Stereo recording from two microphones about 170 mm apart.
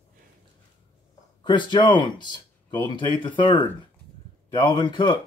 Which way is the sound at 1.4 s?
25° left (ahead or behind).